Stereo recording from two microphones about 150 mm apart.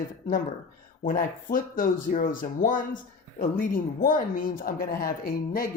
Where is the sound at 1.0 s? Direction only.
65° left (ahead or behind).